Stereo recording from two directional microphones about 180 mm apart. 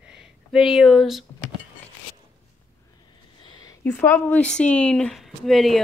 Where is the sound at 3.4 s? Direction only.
25° left (ahead or behind).